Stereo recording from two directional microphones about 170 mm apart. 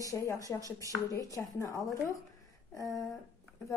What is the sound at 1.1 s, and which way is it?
A woman's voice, 20° left (ahead or behind).